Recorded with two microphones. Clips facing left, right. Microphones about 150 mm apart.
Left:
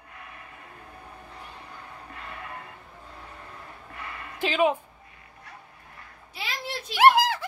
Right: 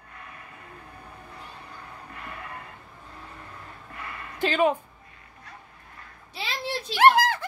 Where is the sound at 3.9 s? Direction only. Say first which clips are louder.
Right 1 dB; 20° left (ahead or behind).